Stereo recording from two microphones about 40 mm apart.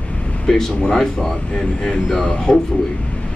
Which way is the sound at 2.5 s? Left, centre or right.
Centre.